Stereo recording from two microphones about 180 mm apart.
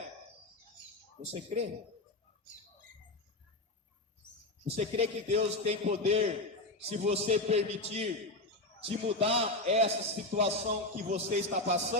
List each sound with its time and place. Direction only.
1.2 s a man's voice: 35° right (ahead or behind)
4.6 s a man's voice: 35° right (ahead or behind)